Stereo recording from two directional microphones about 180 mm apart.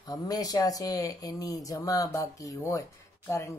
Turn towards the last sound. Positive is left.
turn(degrees=15)  # may be behind; listen again after turning